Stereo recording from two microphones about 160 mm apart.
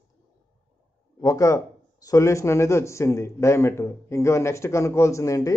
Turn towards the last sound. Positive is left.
turn(degrees=20)  # may be behind; listen again after turning